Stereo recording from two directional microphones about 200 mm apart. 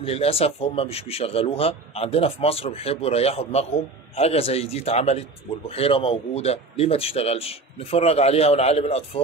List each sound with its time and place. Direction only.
0.0 s a man's voice: 30° left (ahead or behind)